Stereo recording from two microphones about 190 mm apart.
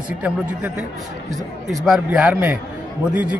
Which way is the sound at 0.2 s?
10° right (ahead or behind).